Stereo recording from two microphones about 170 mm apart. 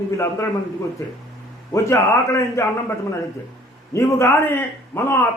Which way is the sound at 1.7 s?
15° left (ahead or behind).